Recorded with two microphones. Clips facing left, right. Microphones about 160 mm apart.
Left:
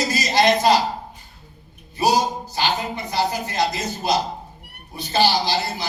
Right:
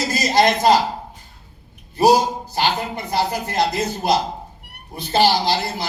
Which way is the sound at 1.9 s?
60° right (ahead or behind).